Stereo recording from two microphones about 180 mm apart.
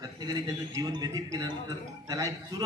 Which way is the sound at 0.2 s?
20° right (ahead or behind).